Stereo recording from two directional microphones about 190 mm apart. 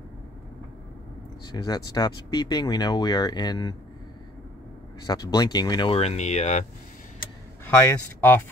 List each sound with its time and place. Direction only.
1.5 s speech: 20° left (ahead or behind)
5.0 s speech: 20° left (ahead or behind); by 6.6 s 35° left (ahead or behind)
7.6 s a man's voice: 10° left (ahead or behind)